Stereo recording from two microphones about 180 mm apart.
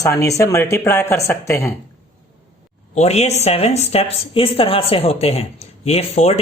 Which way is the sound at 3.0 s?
40° left (ahead or behind).